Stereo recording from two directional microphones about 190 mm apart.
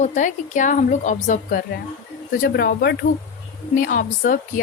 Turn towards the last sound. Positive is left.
turn(degrees=45)  # may be behind; listen again after turning